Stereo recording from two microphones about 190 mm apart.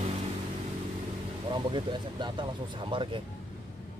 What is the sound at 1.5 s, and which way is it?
Speech, 25° right (ahead or behind).